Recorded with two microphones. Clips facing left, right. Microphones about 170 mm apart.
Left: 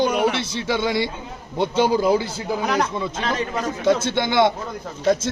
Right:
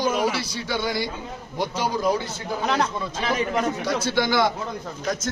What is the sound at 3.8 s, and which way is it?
Speech, 25° left (ahead or behind).